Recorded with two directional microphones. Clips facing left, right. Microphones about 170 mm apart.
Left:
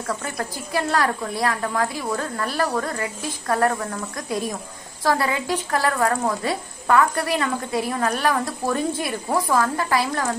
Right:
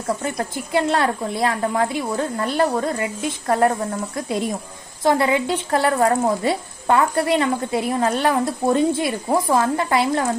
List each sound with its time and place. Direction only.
0.2 s a woman's voice: 25° right (ahead or behind)